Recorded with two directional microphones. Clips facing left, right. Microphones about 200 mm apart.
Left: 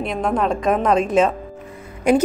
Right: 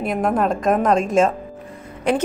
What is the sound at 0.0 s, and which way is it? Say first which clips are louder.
A woman's voice: right 1 dB; 5° right (ahead or behind).